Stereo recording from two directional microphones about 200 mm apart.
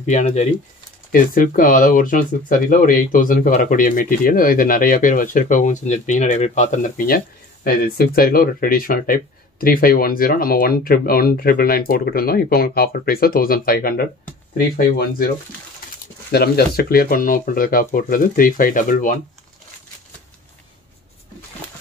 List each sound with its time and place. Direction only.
0.0 s speech: 35° left (ahead or behind)
16.3 s speech: 55° left (ahead or behind)